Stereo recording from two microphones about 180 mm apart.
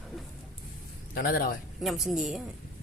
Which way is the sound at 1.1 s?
50° left (ahead or behind).